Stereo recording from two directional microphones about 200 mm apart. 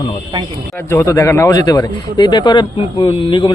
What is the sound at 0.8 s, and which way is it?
A man's voice, 15° left (ahead or behind).